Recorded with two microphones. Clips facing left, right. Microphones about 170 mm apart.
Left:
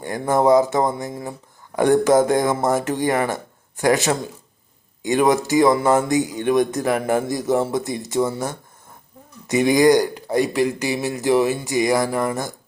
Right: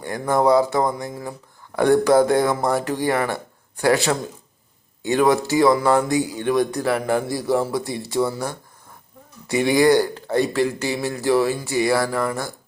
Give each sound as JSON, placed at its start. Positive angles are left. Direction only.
{"t": 0.0, "sound": "speech", "side_deg": 20}